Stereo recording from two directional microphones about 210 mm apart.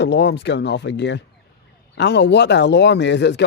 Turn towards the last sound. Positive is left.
turn(degrees=55)  # may be behind; listen again after turning